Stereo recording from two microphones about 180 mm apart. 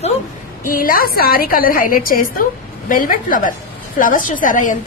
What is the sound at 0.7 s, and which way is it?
A woman's voice, 50° left (ahead or behind).